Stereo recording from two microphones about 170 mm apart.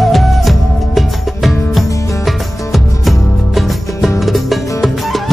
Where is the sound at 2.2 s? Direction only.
Centre (ahead or behind).